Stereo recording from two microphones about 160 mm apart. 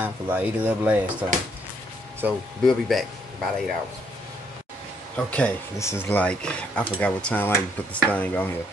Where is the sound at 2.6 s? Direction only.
Centre (ahead or behind).